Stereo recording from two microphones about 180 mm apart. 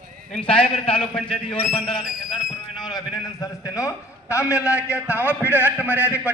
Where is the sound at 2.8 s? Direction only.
20° left (ahead or behind).